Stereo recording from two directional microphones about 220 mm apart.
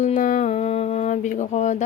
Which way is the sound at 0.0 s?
35° left (ahead or behind).